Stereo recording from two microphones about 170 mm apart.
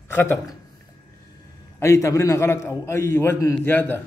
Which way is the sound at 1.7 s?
15° left (ahead or behind).